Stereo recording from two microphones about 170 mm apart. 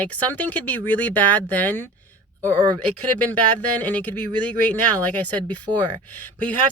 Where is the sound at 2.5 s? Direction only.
20° right (ahead or behind).